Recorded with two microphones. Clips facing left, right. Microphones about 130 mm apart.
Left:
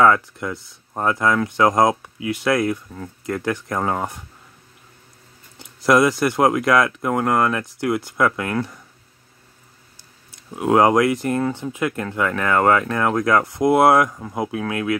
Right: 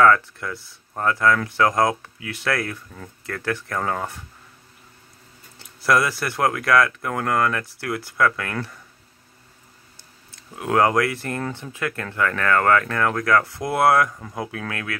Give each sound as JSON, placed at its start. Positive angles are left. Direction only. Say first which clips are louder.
{"t": 0.0, "sound": "speech", "louder": "left 1 dB", "side_deg": 20}
{"t": 5.6, "sound": "speech", "louder": "left 5 dB", "side_deg": 15}
{"t": 10.5, "sound": "speech", "louder": "left 4 dB", "side_deg": 20}